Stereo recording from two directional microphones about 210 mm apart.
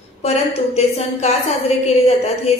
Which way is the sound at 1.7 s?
30° left (ahead or behind).